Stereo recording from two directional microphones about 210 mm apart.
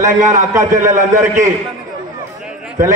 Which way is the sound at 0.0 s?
35° right (ahead or behind).